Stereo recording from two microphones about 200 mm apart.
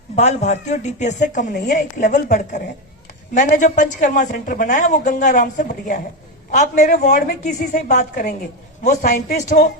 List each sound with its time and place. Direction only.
0.2 s speech: 35° left (ahead or behind)